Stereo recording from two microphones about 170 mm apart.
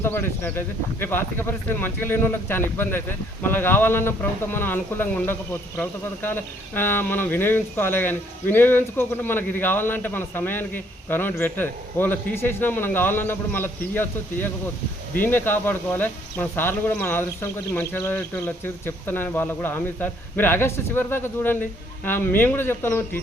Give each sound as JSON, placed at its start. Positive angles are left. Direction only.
{"t": 0.0, "sound": "speech", "side_deg": 15}